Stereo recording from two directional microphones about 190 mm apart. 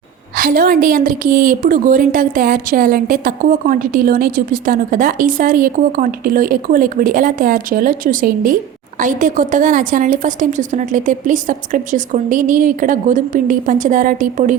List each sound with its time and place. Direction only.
0.3 s a woman's voice: 50° right (ahead or behind)